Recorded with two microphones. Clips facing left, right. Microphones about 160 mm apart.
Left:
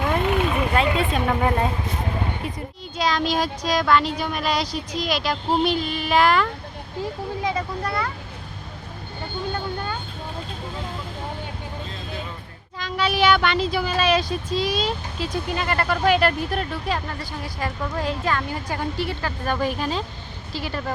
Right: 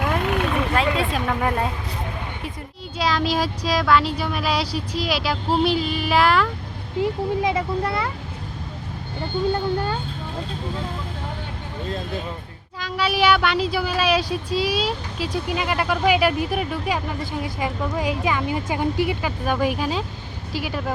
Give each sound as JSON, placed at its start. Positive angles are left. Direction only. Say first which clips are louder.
{"t": 0.0, "sound": "vehicle", "louder": "left 1 dB", "side_deg": 0}
{"t": 3.0, "sound": "speech", "louder": "even", "side_deg": -5}
{"t": 7.4, "sound": "speech", "louder": "right 3 dB", "side_deg": -25}
{"t": 12.8, "sound": "speech", "louder": "even", "side_deg": -5}